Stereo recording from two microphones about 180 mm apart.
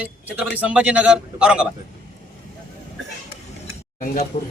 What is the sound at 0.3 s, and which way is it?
A man's voice, 5° right (ahead or behind).